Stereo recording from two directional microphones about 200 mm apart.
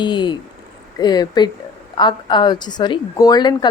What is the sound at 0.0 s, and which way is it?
A woman's voice, 25° left (ahead or behind).